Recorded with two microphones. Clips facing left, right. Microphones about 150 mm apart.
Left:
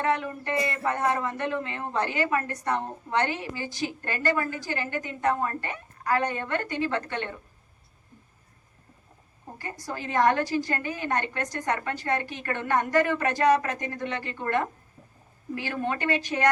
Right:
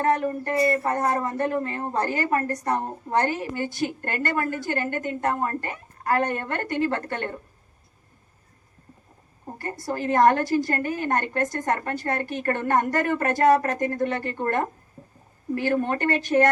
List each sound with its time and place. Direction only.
0.0 s speech: 45° right (ahead or behind)
9.6 s speech: 45° right (ahead or behind)